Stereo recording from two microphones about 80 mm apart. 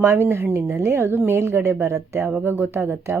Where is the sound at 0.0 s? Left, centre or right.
Right.